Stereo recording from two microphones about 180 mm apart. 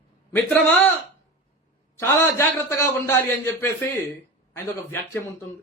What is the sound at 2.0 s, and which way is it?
A man's voice, 15° left (ahead or behind).